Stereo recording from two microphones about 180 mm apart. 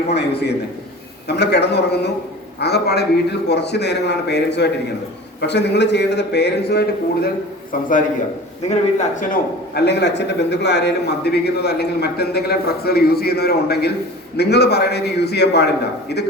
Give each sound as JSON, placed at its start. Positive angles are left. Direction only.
{"t": 0.1, "sound": "a man's voice", "side_deg": 70}
{"t": 7.7, "sound": "a man's voice", "side_deg": 50}
{"t": 9.3, "sound": "a man's voice", "side_deg": 65}